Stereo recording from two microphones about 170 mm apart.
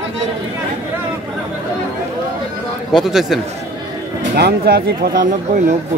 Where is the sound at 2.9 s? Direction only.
Centre (ahead or behind).